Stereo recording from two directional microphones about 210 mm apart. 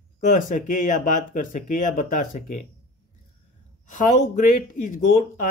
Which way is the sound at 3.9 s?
35° left (ahead or behind).